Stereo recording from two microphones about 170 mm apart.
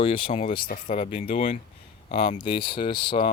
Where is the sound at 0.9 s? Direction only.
40° left (ahead or behind).